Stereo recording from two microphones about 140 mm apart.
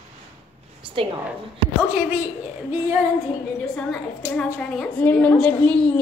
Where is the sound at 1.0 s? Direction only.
40° right (ahead or behind).